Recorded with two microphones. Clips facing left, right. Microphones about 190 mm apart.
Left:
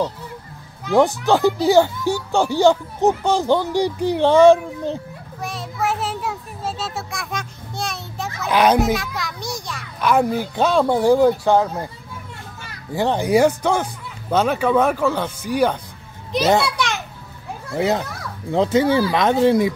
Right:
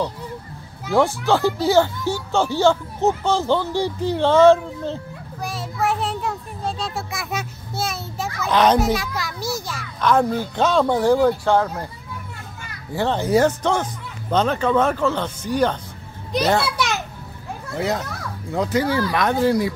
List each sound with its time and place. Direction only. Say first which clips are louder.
0.9 s speech: left 2 dB; 15° left (ahead or behind)
5.4 s child singing: even; centre (ahead or behind)
8.5 s speech: left 1 dB; 10° left (ahead or behind)
8.7 s a child's voice: left 1 dB; centre (ahead or behind)
9.9 s speech: left 1 dB; 10° left (ahead or behind)
12.9 s speech: left 1 dB; 15° left (ahead or behind)
17.7 s speech: left 4 dB; 25° left (ahead or behind)